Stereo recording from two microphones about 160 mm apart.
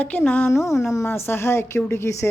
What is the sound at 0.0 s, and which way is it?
A woman's voice, 10° left (ahead or behind).